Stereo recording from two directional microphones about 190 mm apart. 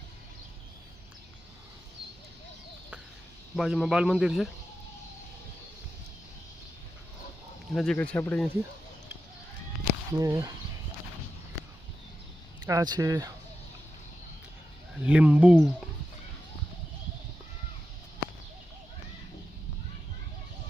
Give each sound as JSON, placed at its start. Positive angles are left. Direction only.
{"t": 3.5, "sound": "speech", "side_deg": 0}
{"t": 7.7, "sound": "speech", "side_deg": 5}
{"t": 10.2, "sound": "speech", "side_deg": -20}
{"t": 12.6, "sound": "speech", "side_deg": -20}
{"t": 14.9, "sound": "speech", "side_deg": -5}